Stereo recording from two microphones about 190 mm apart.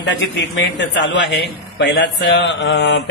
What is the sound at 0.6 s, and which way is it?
A man's voice, 70° left (ahead or behind).